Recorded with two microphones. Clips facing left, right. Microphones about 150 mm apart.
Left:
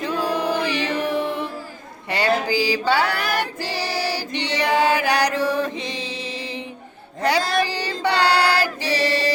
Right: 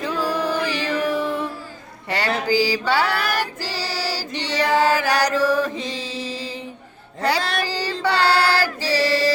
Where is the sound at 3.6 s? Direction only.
55° left (ahead or behind).